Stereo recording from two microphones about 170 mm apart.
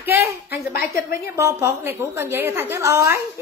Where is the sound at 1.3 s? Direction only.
15° right (ahead or behind).